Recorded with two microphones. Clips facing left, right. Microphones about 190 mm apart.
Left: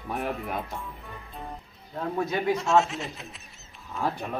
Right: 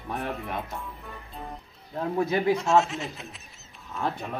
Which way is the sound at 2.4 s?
Centre (ahead or behind).